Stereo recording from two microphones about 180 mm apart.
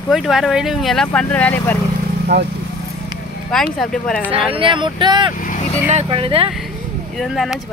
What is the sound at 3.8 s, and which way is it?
Speech, 5° left (ahead or behind).